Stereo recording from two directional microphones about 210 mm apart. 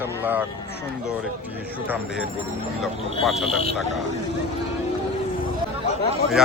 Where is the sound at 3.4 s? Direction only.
30° left (ahead or behind).